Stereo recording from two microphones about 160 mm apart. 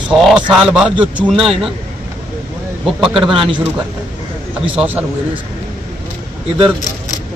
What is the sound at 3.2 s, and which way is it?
Speech, 35° right (ahead or behind).